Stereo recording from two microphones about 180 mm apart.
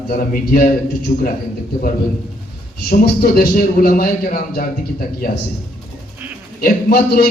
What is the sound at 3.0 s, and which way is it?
Speech, 55° left (ahead or behind).